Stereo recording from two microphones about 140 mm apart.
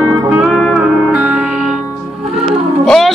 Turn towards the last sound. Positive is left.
turn(degrees=0)  # may be behind; listen again after turning